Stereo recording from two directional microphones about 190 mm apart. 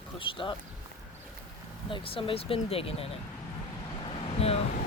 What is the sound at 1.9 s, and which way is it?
Speech, 30° left (ahead or behind).